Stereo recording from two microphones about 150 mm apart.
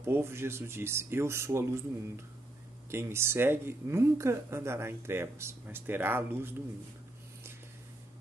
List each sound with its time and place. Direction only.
0.0 s speech: 15° right (ahead or behind)
2.9 s speech: 15° right (ahead or behind)